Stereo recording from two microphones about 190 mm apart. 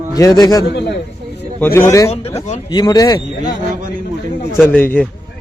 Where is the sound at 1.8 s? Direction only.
15° left (ahead or behind).